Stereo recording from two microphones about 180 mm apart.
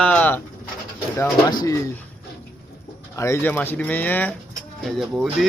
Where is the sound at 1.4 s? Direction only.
20° left (ahead or behind).